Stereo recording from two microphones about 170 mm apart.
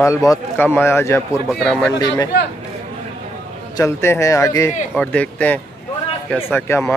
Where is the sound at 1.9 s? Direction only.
20° left (ahead or behind).